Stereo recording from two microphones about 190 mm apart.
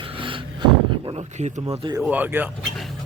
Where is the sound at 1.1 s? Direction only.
35° right (ahead or behind).